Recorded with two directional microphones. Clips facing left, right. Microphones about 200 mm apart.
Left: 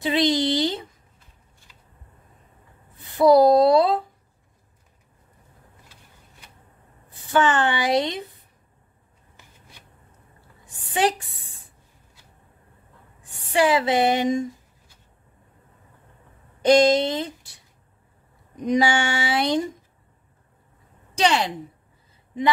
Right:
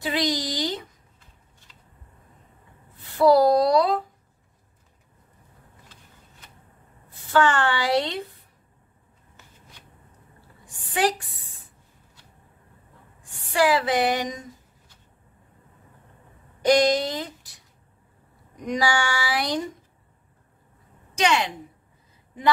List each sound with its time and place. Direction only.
0.0 s speech: 25° left (ahead or behind)
3.3 s speech: 20° left (ahead or behind)
7.3 s speech: 20° left (ahead or behind)
13.5 s speech: 20° left (ahead or behind)
16.6 s speech: 25° left (ahead or behind)
18.6 s speech: 20° left (ahead or behind)
21.1 s a woman's voice: 35° left (ahead or behind)